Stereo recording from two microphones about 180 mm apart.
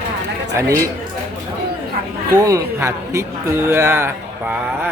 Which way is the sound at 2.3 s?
20° right (ahead or behind).